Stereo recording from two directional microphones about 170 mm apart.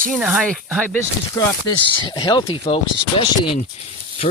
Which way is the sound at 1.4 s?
25° left (ahead or behind).